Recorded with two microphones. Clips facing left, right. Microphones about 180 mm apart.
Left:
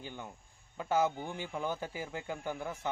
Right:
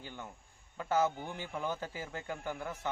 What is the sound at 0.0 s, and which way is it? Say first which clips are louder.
Speech: left 2 dB; 15° left (ahead or behind).